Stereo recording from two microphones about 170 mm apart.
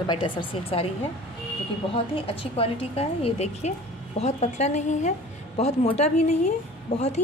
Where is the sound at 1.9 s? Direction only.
35° left (ahead or behind).